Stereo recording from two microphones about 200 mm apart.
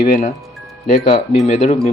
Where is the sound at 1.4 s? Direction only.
35° left (ahead or behind).